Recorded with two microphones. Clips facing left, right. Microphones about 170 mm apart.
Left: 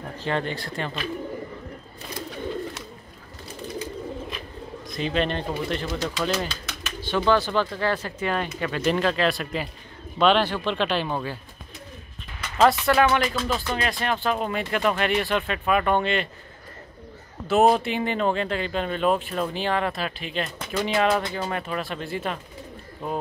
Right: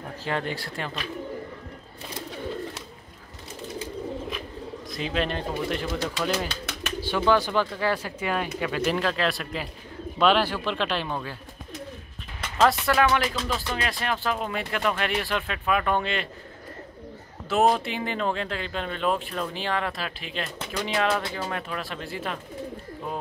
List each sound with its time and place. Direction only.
0.2 s speech: 5° right (ahead or behind)
4.8 s speech: 5° right (ahead or behind)
6.5 s bird: 65° right (ahead or behind)
7.0 s speech: 10° right (ahead or behind)
12.5 s speech: centre (ahead or behind)
17.5 s speech: centre (ahead or behind)